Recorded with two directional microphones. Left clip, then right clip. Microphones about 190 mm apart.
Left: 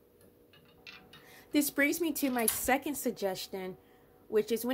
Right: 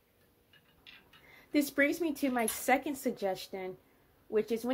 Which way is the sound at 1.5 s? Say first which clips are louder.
Even; 15° left (ahead or behind).